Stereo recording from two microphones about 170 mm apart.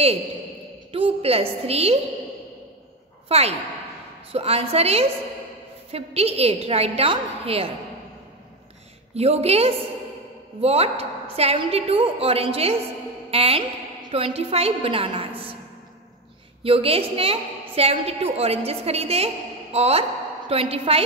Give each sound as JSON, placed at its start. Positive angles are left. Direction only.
{"t": 0.9, "sound": "a woman's voice", "side_deg": -35}
{"t": 3.3, "sound": "a woman's voice", "side_deg": -40}
{"t": 9.1, "sound": "a woman's voice", "side_deg": -40}
{"t": 16.6, "sound": "a woman's voice", "side_deg": -35}